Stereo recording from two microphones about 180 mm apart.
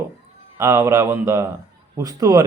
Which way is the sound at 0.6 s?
15° right (ahead or behind).